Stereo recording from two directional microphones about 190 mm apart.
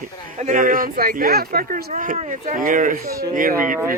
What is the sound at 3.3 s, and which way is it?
Speech, 45° right (ahead or behind).